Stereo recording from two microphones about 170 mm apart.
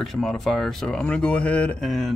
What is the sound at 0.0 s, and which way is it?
Speech, centre (ahead or behind).